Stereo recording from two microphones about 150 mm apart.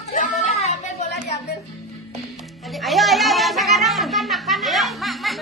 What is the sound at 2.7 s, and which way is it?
Music, centre (ahead or behind).